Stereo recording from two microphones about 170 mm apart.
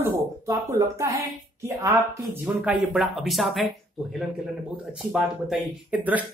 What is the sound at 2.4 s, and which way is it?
Speech, 5° right (ahead or behind).